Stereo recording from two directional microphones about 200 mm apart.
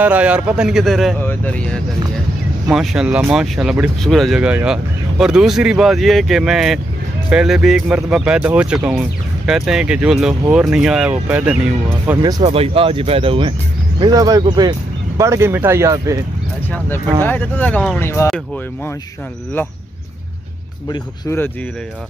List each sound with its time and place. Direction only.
0.0 s speech: 5° right (ahead or behind)
12.4 s speech: 30° right (ahead or behind)
17.2 s speech: 10° left (ahead or behind)
20.9 s speech: 15° left (ahead or behind)